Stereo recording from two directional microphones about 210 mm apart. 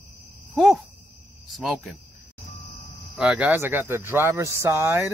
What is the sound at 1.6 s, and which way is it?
Speech, centre (ahead or behind).